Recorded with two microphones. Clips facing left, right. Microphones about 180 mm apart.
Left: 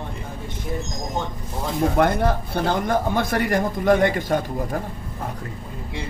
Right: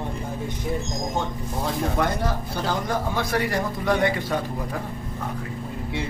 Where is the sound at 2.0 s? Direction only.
55° left (ahead or behind).